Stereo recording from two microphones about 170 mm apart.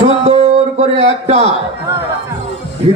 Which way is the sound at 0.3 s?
35° right (ahead or behind).